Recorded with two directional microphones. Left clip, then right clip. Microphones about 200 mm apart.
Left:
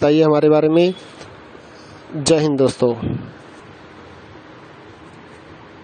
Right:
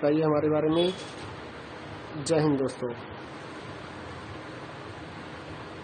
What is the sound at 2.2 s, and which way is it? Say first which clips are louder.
Speech: left 10 dB; 50° left (ahead or behind).